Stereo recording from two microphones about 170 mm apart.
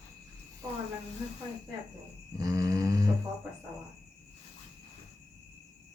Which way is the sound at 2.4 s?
20° right (ahead or behind).